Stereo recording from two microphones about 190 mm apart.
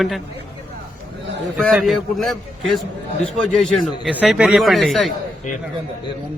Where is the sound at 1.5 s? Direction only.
Centre (ahead or behind).